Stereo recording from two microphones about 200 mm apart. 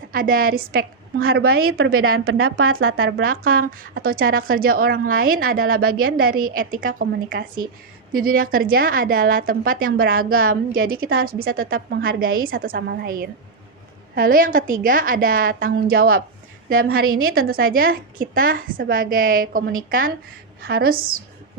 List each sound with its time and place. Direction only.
0.1 s speech: 45° right (ahead or behind)
1.8 s a woman's voice: 90° right
2.9 s speech: 50° right (ahead or behind)
17.2 s a woman's voice: 90° right
17.6 s speech: 45° right (ahead or behind)